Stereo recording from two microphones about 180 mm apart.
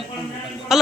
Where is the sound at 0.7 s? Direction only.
Centre (ahead or behind).